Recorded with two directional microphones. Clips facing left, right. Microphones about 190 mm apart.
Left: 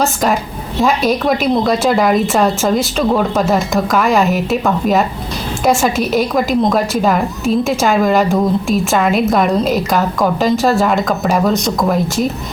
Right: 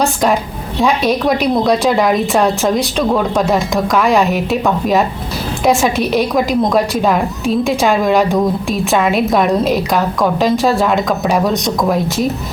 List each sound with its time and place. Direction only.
0.0 s a woman's voice: centre (ahead or behind)